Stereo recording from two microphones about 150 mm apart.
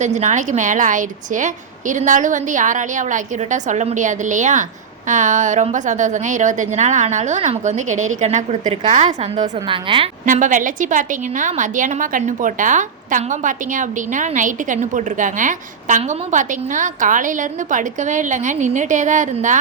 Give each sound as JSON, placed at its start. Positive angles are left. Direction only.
{"t": 0.0, "sound": "a woman's voice", "side_deg": -50}
{"t": 8.7, "sound": "a woman's voice", "side_deg": -40}
{"t": 9.4, "sound": "a woman's voice", "side_deg": -35}
{"t": 10.2, "sound": "a woman's voice", "side_deg": -60}